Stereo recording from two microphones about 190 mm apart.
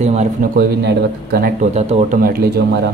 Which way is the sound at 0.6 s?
55° right (ahead or behind).